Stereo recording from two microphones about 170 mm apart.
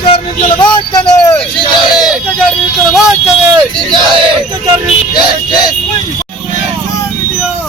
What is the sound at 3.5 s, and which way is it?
Speech, 30° right (ahead or behind).